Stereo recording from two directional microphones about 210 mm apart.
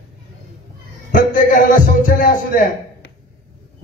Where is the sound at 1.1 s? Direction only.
40° left (ahead or behind).